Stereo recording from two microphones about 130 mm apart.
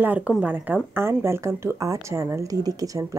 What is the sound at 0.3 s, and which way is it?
Speech, 10° right (ahead or behind).